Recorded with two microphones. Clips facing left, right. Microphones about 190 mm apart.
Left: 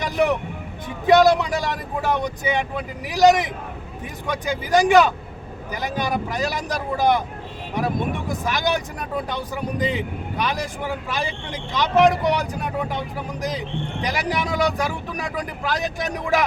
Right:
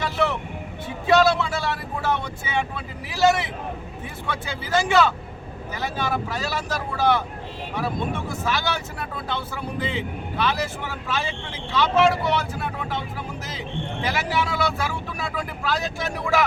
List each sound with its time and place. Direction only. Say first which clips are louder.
0.0 s vehicle: left 4 dB; 15° left (ahead or behind)
1.0 s speech: left 4 dB; 15° left (ahead or behind)